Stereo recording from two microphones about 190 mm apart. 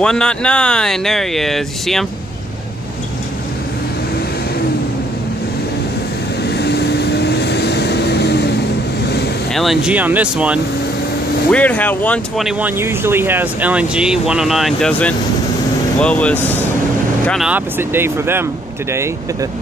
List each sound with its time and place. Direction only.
0.0 s speech: 5° left (ahead or behind)
6.4 s vehicle: 60° left (ahead or behind)
9.5 s speech: centre (ahead or behind)
11.5 s speech: 5° left (ahead or behind)
17.3 s speech: 5° right (ahead or behind)